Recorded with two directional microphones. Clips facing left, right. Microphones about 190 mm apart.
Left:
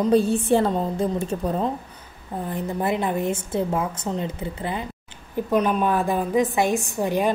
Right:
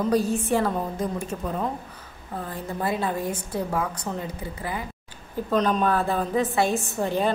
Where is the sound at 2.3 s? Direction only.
20° left (ahead or behind).